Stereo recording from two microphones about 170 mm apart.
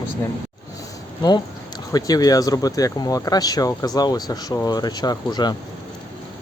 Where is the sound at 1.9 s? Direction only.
20° left (ahead or behind).